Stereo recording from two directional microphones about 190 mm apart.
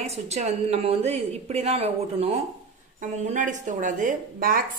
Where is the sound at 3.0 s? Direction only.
40° right (ahead or behind).